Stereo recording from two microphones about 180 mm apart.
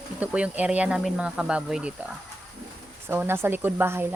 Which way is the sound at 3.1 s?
10° right (ahead or behind).